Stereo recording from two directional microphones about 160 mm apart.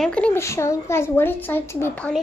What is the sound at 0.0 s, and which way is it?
A woman's voice, 5° left (ahead or behind).